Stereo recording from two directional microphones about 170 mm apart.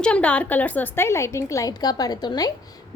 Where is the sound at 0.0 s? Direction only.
5° left (ahead or behind).